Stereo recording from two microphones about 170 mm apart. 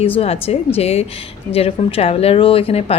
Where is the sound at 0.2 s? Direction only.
35° left (ahead or behind).